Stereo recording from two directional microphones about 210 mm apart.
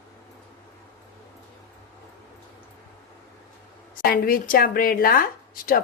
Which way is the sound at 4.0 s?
45° left (ahead or behind).